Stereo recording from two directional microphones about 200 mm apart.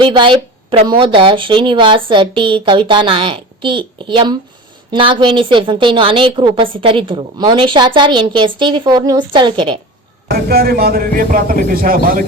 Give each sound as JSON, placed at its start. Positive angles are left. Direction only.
{"t": 0.0, "sound": "a woman's voice", "side_deg": -25}
{"t": 10.2, "sound": "a man's voice", "side_deg": -50}